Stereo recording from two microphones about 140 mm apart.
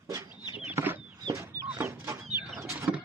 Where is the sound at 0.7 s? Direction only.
15° right (ahead or behind).